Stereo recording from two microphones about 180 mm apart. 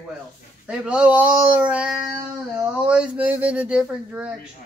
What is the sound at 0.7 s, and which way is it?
A man's voice, 5° right (ahead or behind).